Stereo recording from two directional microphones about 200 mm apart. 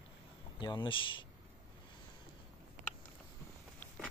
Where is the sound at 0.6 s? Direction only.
25° left (ahead or behind).